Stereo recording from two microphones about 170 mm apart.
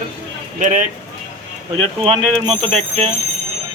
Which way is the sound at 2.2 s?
5° left (ahead or behind).